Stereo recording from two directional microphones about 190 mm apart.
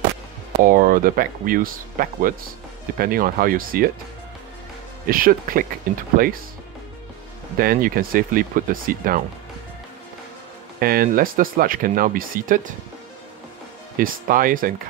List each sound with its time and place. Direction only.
0.7 s speech: 45° right (ahead or behind)
5.0 s speech: 50° right (ahead or behind)
7.5 s speech: 50° right (ahead or behind)
10.8 s speech: 50° right (ahead or behind)
13.9 s speech: 45° right (ahead or behind)